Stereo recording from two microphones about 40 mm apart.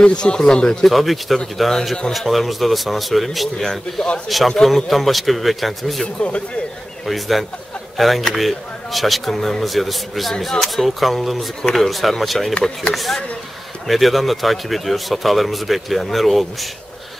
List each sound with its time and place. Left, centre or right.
0.0 s speech: left
0.8 s a man's voice: centre
6.0 s speech: left
7.1 s a man's voice: centre